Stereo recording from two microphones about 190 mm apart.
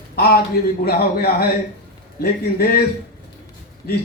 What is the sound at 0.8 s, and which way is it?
Speech, 55° left (ahead or behind).